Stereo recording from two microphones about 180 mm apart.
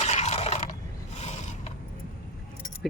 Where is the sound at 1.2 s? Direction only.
40° left (ahead or behind).